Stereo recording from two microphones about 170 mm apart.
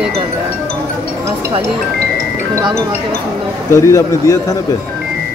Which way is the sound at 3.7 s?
20° left (ahead or behind).